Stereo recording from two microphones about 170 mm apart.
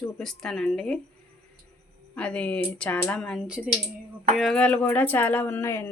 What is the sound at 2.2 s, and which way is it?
A woman's voice, 5° left (ahead or behind).